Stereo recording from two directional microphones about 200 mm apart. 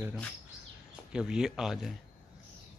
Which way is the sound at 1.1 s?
5° right (ahead or behind).